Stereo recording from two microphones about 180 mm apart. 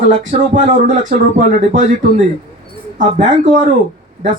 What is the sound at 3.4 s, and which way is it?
Speech, 45° right (ahead or behind).